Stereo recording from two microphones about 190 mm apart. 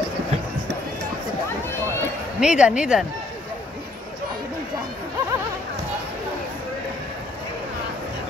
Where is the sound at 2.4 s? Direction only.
5° right (ahead or behind).